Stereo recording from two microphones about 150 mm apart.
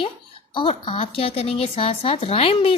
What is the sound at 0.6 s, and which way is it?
A woman's voice, 35° left (ahead or behind).